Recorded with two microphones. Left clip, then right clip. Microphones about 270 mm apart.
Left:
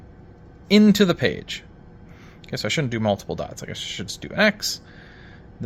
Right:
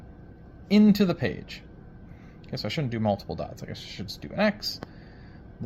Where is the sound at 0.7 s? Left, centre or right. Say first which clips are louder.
Left 6 dB; left.